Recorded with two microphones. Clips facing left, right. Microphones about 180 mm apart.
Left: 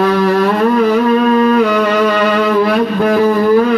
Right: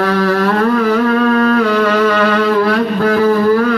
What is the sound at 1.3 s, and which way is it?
Music, 20° left (ahead or behind).